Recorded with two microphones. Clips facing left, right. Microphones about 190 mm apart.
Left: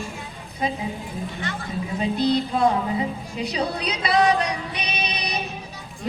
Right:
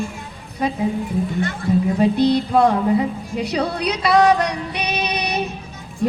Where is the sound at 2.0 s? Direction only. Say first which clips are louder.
Right 3 dB; 60° right (ahead or behind).